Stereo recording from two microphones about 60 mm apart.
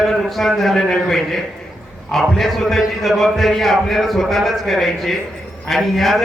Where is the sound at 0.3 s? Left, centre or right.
Centre.